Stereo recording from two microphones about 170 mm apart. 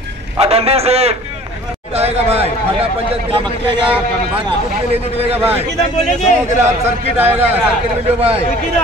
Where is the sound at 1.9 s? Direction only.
35° right (ahead or behind).